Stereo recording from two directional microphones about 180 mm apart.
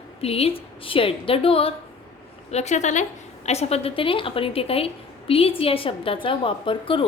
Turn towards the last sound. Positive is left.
turn(degrees=30)  # may be behind; listen again after turning